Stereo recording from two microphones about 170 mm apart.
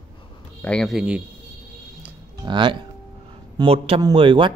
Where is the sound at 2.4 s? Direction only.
25° right (ahead or behind).